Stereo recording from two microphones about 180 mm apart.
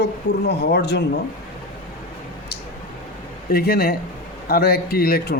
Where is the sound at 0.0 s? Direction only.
65° left (ahead or behind).